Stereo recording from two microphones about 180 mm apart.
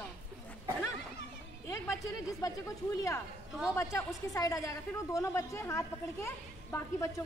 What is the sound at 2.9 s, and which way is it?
A woman's voice, 15° left (ahead or behind).